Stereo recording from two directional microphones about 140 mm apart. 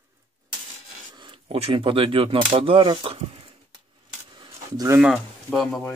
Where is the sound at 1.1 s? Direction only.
30° right (ahead or behind).